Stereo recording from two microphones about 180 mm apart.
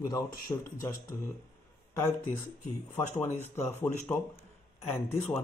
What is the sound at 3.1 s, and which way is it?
Speech, 10° left (ahead or behind).